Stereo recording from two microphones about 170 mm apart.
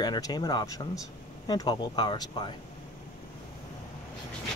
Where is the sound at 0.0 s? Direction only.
25° left (ahead or behind).